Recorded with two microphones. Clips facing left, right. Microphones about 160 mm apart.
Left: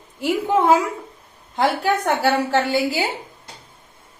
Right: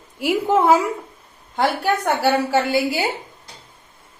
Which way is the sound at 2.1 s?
10° right (ahead or behind).